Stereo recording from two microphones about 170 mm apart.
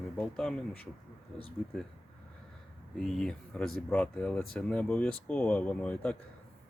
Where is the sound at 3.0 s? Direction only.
5° left (ahead or behind).